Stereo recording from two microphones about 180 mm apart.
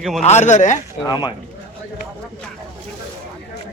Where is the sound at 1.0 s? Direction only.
25° left (ahead or behind).